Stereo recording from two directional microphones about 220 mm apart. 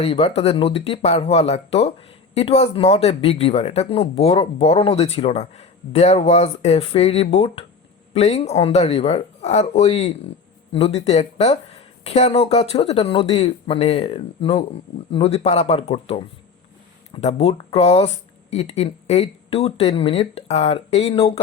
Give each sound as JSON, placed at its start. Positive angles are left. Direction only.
{"t": 0.0, "sound": "speech", "side_deg": 25}